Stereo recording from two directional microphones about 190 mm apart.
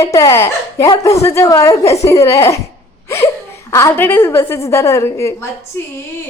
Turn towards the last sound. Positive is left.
turn(degrees=15)  # may be behind; listen again after turning